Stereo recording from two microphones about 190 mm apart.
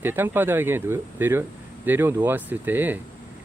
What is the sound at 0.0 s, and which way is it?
Speech, 10° right (ahead or behind).